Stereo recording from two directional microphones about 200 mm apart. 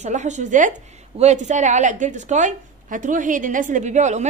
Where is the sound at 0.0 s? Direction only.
35° right (ahead or behind).